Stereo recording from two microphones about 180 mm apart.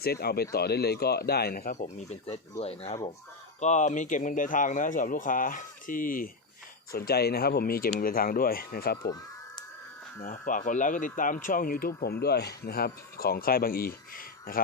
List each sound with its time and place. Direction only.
0.0 s speech: 60° left (ahead or behind)
10.2 s speech: 45° left (ahead or behind)